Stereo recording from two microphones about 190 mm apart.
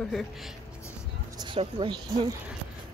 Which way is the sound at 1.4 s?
25° right (ahead or behind).